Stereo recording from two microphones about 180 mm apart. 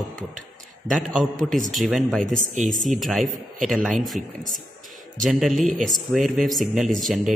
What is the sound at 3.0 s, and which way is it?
Speech, centre (ahead or behind).